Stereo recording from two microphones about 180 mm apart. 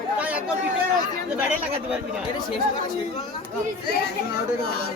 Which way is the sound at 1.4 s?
5° right (ahead or behind).